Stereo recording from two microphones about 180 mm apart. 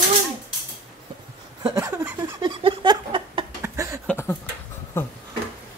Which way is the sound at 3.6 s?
15° right (ahead or behind).